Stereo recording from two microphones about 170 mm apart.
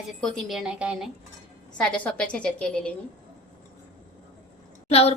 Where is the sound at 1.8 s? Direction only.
5° left (ahead or behind).